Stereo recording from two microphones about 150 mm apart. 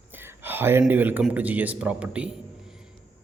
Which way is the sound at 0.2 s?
15° right (ahead or behind).